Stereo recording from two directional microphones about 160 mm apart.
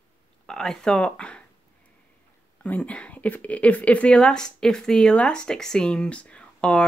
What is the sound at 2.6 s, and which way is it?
Speech, 10° left (ahead or behind).